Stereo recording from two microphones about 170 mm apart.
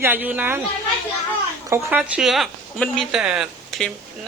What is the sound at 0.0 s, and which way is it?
Speech, 10° right (ahead or behind).